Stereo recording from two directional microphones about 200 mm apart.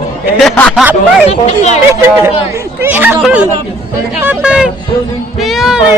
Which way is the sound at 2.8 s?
10° right (ahead or behind).